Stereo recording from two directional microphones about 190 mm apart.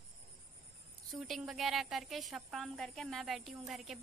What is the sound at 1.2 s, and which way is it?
A woman's voice, centre (ahead or behind).